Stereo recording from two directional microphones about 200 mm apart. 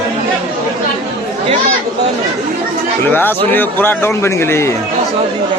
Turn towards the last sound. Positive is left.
turn(degrees=10)  # may be behind; listen again after turning